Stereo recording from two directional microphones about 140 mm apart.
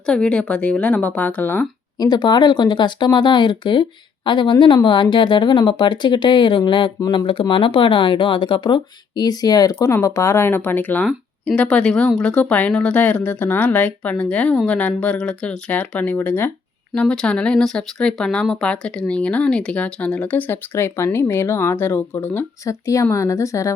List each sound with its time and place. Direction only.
0.0 s speech: 5° left (ahead or behind)
2.0 s speech: 30° left (ahead or behind)